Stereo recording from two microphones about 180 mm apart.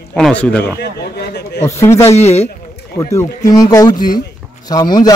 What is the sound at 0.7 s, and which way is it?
Speech, 65° left (ahead or behind).